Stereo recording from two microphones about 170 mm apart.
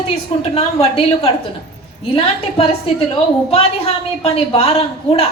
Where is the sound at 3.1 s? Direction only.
35° left (ahead or behind).